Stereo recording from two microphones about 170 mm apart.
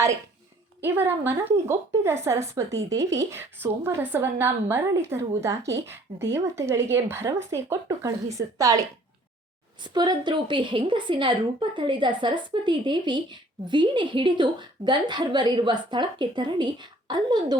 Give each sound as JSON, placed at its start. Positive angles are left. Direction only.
{"t": 0.8, "sound": "a woman's voice", "side_deg": -10}